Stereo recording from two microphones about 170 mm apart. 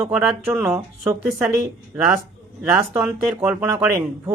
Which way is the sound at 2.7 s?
10° right (ahead or behind).